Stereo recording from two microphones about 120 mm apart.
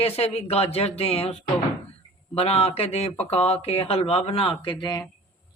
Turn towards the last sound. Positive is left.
turn(degrees=35)  # may be behind; listen again after turning